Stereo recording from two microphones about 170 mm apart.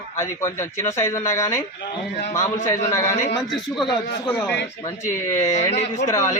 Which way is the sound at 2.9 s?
15° left (ahead or behind).